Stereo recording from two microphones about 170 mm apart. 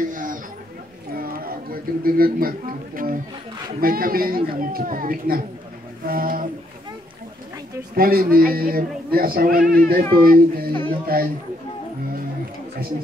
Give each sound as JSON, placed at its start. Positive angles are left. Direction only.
{"t": 0.1, "sound": "a sound", "side_deg": -50}
{"t": 1.1, "sound": "speech", "side_deg": -60}
{"t": 7.9, "sound": "speech", "side_deg": -60}